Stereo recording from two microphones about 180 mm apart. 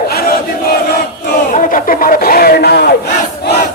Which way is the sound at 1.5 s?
50° left (ahead or behind).